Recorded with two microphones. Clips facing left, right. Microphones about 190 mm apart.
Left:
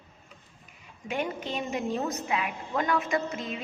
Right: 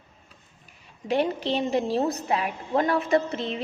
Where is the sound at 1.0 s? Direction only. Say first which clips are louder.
Right 7 dB; 35° right (ahead or behind).